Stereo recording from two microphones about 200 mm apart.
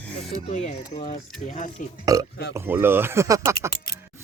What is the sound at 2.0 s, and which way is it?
Speech, 15° right (ahead or behind).